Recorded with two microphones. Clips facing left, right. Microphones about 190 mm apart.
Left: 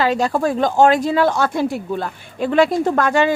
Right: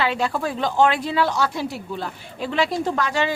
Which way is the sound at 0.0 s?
40° left (ahead or behind).